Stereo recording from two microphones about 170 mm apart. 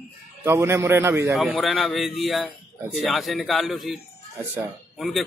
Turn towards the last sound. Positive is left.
turn(degrees=0)  # may be behind; listen again after turning